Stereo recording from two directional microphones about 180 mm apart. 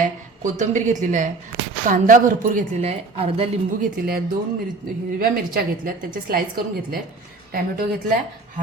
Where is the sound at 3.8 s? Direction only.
55° right (ahead or behind).